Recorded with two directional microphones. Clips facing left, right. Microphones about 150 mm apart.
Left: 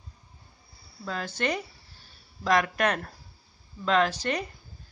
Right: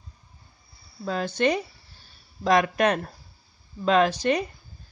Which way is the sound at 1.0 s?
20° right (ahead or behind).